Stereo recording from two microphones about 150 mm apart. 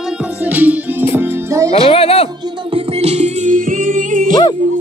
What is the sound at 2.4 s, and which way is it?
Music, 40° right (ahead or behind).